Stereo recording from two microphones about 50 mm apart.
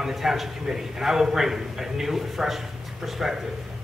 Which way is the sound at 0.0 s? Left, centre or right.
Centre.